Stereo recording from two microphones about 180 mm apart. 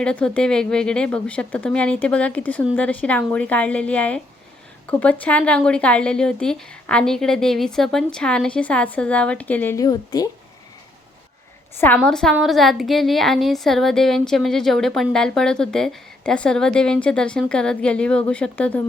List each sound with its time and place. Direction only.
0.0 s a woman's voice: 5° left (ahead or behind)
12.0 s a woman's voice: 5° left (ahead or behind)